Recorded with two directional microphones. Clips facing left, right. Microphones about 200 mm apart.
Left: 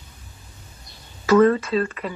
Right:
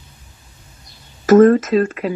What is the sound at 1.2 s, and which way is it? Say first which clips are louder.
Speech: right 6 dB; 45° right (ahead or behind).